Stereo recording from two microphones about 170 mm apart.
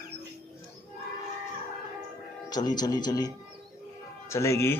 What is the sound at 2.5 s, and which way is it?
Speech, 25° left (ahead or behind).